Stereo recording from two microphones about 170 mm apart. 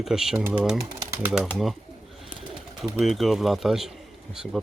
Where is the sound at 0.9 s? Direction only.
15° right (ahead or behind).